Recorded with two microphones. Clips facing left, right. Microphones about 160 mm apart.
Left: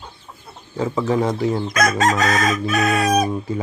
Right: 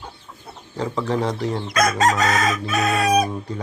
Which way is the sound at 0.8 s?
5° left (ahead or behind).